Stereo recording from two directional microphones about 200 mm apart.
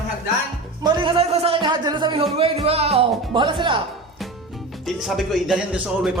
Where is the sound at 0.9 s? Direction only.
25° right (ahead or behind).